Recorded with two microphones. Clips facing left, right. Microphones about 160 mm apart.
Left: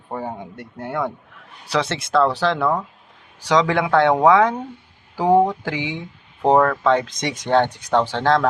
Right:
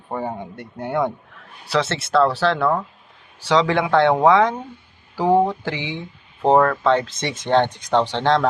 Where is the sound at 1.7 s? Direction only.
15° left (ahead or behind).